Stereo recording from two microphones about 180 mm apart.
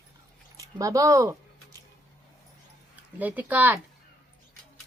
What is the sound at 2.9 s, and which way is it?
Speech, 10° right (ahead or behind).